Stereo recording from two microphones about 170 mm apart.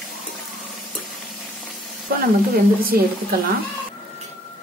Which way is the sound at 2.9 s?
65° right (ahead or behind).